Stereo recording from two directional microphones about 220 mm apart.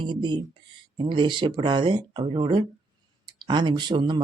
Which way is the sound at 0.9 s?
20° right (ahead or behind).